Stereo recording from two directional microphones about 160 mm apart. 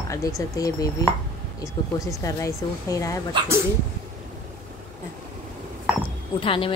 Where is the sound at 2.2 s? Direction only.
20° left (ahead or behind).